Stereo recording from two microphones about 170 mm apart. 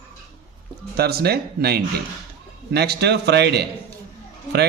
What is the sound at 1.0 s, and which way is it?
A man's voice, 65° right (ahead or behind).